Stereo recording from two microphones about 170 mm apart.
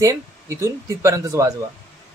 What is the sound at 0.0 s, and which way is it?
Speech, 20° right (ahead or behind).